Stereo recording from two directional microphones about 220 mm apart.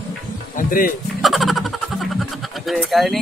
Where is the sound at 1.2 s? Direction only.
Centre (ahead or behind).